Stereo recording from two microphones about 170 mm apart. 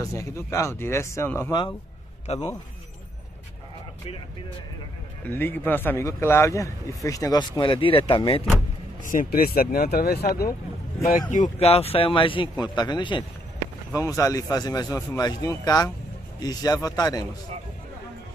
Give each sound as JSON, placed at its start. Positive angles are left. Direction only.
{"t": 0.0, "sound": "a man's voice", "side_deg": 20}
{"t": 2.3, "sound": "a man's voice", "side_deg": 40}
{"t": 5.3, "sound": "a man's voice", "side_deg": 10}
{"t": 9.1, "sound": "speech", "side_deg": 55}
{"t": 11.3, "sound": "a man's voice", "side_deg": 40}